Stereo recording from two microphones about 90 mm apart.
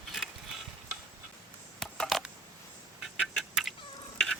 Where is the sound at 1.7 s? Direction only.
5° left (ahead or behind).